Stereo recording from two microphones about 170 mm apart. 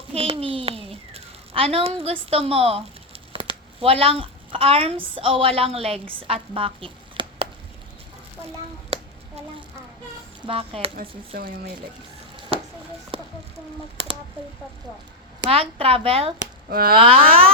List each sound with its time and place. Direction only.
0.1 s a sound: 35° right (ahead or behind)
3.3 s a woman's voice: 35° right (ahead or behind)
8.9 s a sound: 35° right (ahead or behind)
10.4 s speech: 35° right (ahead or behind)
12.5 s a sound: 35° right (ahead or behind)
13.9 s speech: 35° right (ahead or behind)
15.4 s speech: 35° right (ahead or behind)
16.6 s speech: 60° right (ahead or behind)
17.0 s speech: 35° right (ahead or behind)